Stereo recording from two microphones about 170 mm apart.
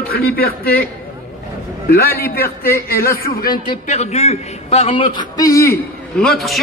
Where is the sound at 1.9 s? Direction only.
65° left (ahead or behind).